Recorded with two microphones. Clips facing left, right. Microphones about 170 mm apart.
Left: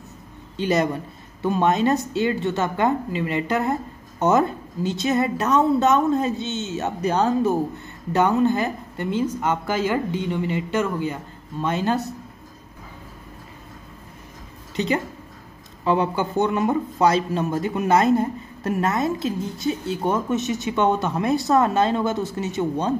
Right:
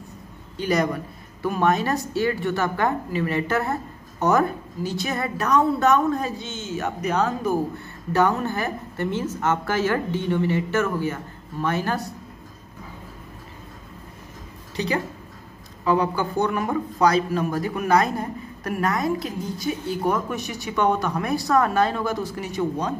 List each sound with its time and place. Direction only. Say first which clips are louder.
0.6 s a man's voice: left 1 dB; 25° left (ahead or behind)
8.1 s a woman's voice: left 3 dB; 20° left (ahead or behind)
15.8 s a man's voice: left 1 dB; 25° left (ahead or behind)